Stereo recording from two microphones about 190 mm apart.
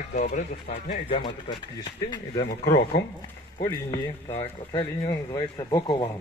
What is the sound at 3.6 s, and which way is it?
Speech, 20° left (ahead or behind).